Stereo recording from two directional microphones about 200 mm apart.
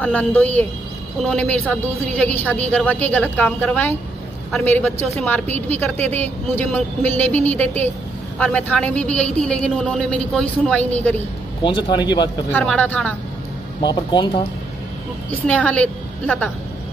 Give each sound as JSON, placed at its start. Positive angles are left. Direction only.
{"t": 0.0, "sound": "a woman's voice", "side_deg": 5}
{"t": 11.6, "sound": "speech", "side_deg": 20}
{"t": 12.4, "sound": "a woman's voice", "side_deg": 10}
{"t": 13.7, "sound": "speech", "side_deg": 20}
{"t": 15.4, "sound": "a woman's voice", "side_deg": 5}